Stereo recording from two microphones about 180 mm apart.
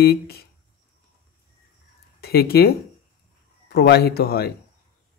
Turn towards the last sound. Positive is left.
turn(degrees=60)  # may be behind; listen again after turning